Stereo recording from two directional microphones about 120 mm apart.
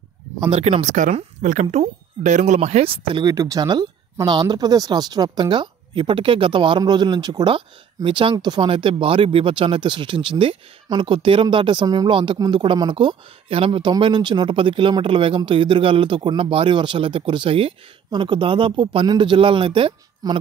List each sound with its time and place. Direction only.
0.6 s speech: 70° right (ahead or behind)
2.8 s speech: 45° right (ahead or behind)
3.3 s speech: 30° right (ahead or behind)